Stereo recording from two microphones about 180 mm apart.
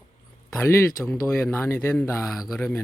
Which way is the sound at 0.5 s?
15° left (ahead or behind).